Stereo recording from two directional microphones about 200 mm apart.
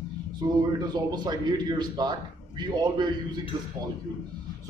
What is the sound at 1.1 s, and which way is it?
A man's voice, 20° right (ahead or behind).